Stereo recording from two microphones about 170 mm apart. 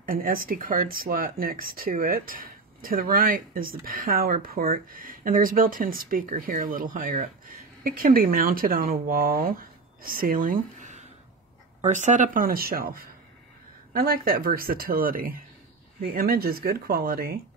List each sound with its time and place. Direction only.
0.0 s speech: 55° right (ahead or behind)